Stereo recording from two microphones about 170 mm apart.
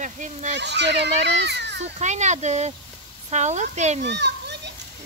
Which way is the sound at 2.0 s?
45° right (ahead or behind).